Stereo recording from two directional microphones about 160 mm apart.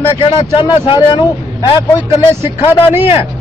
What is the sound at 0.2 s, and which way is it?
A man's voice, 35° left (ahead or behind).